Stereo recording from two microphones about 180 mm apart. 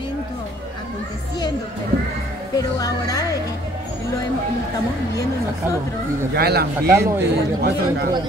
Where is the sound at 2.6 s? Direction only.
20° left (ahead or behind).